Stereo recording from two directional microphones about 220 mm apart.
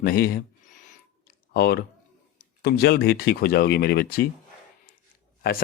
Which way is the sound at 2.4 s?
45° left (ahead or behind).